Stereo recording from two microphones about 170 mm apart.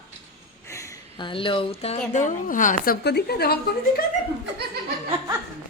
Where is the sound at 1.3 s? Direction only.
30° left (ahead or behind); by 4.0 s 65° left (ahead or behind).